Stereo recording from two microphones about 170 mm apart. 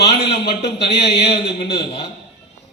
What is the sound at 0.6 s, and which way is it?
Speech, 80° left.